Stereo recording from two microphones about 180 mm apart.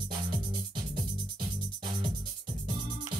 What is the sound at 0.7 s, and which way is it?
Music, 25° right (ahead or behind).